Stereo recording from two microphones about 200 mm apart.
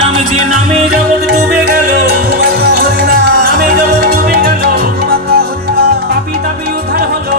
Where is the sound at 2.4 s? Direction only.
50° right (ahead or behind).